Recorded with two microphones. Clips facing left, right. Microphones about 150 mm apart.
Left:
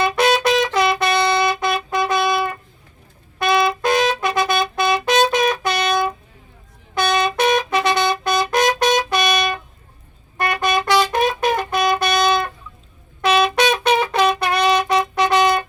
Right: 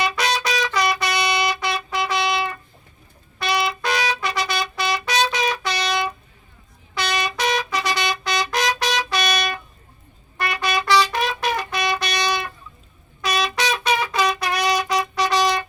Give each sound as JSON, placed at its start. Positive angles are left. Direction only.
{"t": 0.0, "sound": "music", "side_deg": 50}
{"t": 3.3, "sound": "trumpet", "side_deg": 50}
{"t": 10.3, "sound": "music", "side_deg": 50}